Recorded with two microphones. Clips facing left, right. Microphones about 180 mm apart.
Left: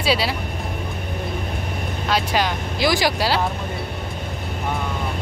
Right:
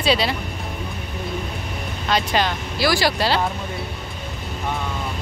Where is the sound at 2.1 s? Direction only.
10° left (ahead or behind).